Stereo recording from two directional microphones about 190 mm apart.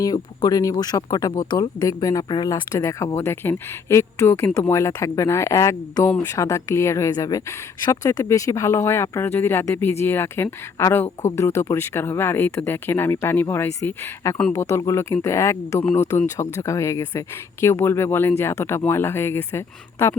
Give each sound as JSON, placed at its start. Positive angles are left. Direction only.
{"t": 0.0, "sound": "speech", "side_deg": 20}